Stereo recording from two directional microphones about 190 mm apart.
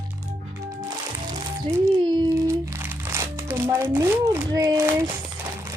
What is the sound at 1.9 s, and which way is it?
Crumpling, 20° right (ahead or behind).